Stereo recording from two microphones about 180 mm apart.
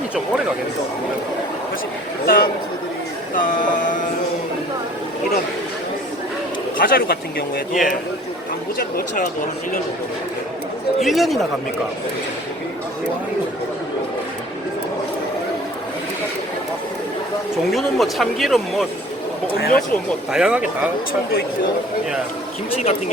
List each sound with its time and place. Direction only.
2.2 s a man's voice: 55° left (ahead or behind)
3.4 s a sound: 45° left (ahead or behind)
6.7 s a man's voice: 55° left (ahead or behind)
9.0 s a sound: 50° left (ahead or behind)
11.0 s speech: centre (ahead or behind)
17.7 s speech: centre (ahead or behind)
19.5 s a man's voice: 55° left (ahead or behind)
20.3 s speech: 5° right (ahead or behind)
22.7 s speech: 35° left (ahead or behind)